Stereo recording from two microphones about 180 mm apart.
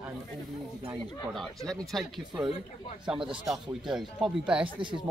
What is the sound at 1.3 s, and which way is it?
Speech, centre (ahead or behind).